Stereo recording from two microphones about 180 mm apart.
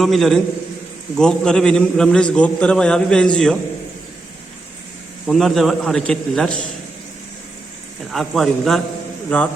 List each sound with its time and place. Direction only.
0.0 s a man's voice: centre (ahead or behind)
5.2 s a man's voice: centre (ahead or behind)
8.1 s a man's voice: centre (ahead or behind)